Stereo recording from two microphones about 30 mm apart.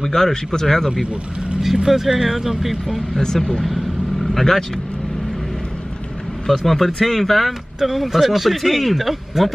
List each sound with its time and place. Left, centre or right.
0.0 s speech: centre
1.9 s speech: centre
6.4 s speech: centre
7.8 s speech: centre